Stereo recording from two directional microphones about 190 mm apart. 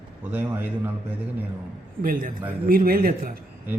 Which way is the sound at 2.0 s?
50° right (ahead or behind).